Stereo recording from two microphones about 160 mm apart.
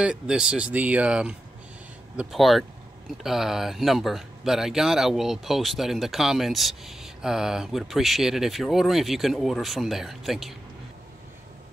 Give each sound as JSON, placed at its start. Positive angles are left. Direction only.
{"t": 0.0, "sound": "speech", "side_deg": -5}